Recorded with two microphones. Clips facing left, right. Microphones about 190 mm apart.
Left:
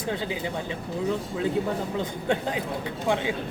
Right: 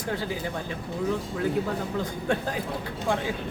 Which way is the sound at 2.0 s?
20° left (ahead or behind).